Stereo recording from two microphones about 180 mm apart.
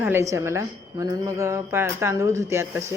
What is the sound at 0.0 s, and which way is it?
A woman's voice, 15° right (ahead or behind).